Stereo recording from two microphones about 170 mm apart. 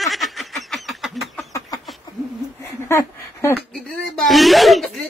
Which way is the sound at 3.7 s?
Centre (ahead or behind).